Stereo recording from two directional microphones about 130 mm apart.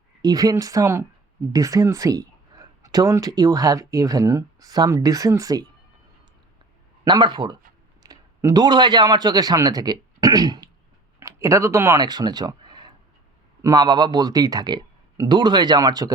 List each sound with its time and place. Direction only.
0.2 s speech: 30° right (ahead or behind)
7.0 s a man's voice: 35° right (ahead or behind)